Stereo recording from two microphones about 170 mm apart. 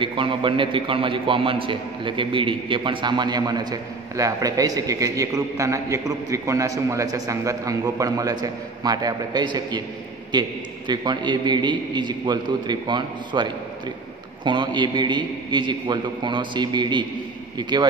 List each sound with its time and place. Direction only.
0.0 s a man's voice: 30° right (ahead or behind)